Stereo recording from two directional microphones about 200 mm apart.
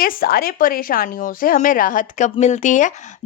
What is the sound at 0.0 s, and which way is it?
A woman's voice, 45° left (ahead or behind).